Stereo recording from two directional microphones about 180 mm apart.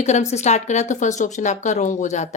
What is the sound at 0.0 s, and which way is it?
Speech, 40° left (ahead or behind).